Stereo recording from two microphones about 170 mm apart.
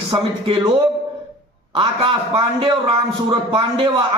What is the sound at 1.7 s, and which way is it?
A man's voice, 30° right (ahead or behind).